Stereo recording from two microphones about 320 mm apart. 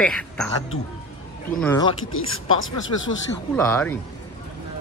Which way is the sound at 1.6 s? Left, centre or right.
Centre.